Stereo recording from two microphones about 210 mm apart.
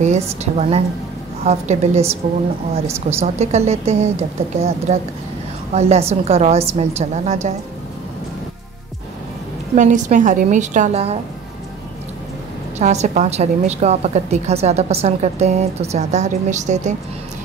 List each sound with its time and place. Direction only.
0.0 s a woman's voice: 35° right (ahead or behind)
9.8 s a woman's voice: 35° right (ahead or behind)
12.7 s a woman's voice: 35° right (ahead or behind)